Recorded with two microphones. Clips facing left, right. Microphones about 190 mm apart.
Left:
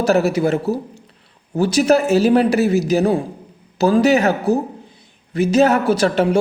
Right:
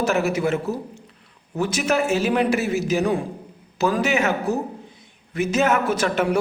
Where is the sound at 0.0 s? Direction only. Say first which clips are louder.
Left 5 dB; 35° left (ahead or behind).